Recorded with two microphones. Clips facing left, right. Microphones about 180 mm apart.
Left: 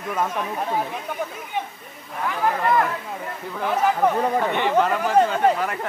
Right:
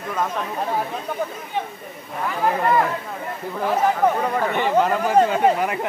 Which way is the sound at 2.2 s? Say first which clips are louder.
Right 1 dB; 5° right (ahead or behind).